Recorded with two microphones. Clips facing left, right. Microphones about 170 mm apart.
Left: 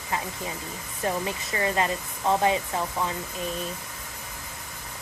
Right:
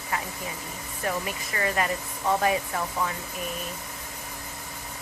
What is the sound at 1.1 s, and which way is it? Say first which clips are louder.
Speech: left 2 dB; 25° left (ahead or behind).